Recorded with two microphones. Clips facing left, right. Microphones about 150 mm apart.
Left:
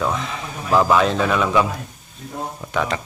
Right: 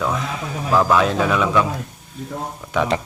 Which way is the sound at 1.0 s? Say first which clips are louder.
Even; 5° right (ahead or behind).